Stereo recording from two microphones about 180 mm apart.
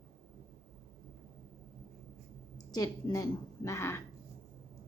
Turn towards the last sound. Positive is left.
turn(degrees=15)  # may be behind; listen again after turning